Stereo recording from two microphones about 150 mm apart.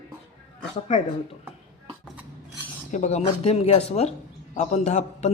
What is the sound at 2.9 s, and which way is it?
Speech, 50° left (ahead or behind).